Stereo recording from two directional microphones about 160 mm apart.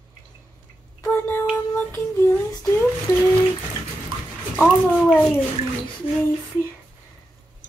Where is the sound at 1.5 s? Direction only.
10° left (ahead or behind).